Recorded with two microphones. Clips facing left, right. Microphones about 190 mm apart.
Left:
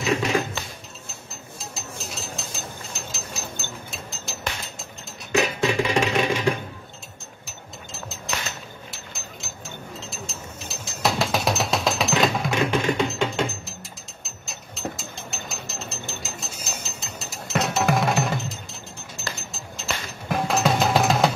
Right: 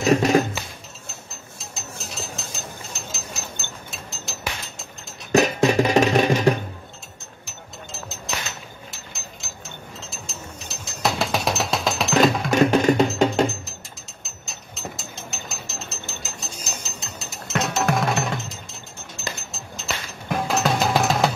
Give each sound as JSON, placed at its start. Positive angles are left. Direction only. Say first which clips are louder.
{"t": 0.0, "sound": "a sound", "louder": "right 6 dB", "side_deg": -40}
{"t": 1.6, "sound": "a sound", "louder": "left 1 dB", "side_deg": 0}
{"t": 2.9, "sound": "ratchet", "louder": "even", "side_deg": 0}
{"t": 5.3, "sound": "music", "louder": "right 5 dB", "side_deg": -40}
{"t": 7.4, "sound": "mechanisms", "louder": "right 2 dB", "side_deg": 0}
{"t": 8.9, "sound": "ratchet", "louder": "left 1 dB", "side_deg": 0}
{"t": 10.1, "sound": "music", "louder": "left 1 dB", "side_deg": 0}
{"t": 12.4, "sound": "music", "louder": "right 6 dB", "side_deg": -40}
{"t": 14.2, "sound": "ratchet", "louder": "left 1 dB", "side_deg": 0}
{"t": 17.0, "sound": "music", "louder": "even", "side_deg": 0}